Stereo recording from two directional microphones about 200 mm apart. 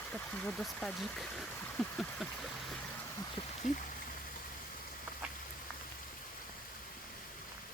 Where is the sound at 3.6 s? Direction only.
40° left (ahead or behind).